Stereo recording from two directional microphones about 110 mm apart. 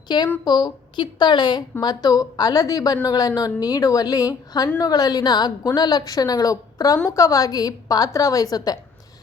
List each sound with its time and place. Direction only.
0.1 s a woman's voice: 40° left (ahead or behind)